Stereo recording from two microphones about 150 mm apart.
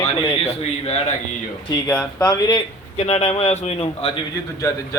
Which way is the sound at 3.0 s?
50° left (ahead or behind).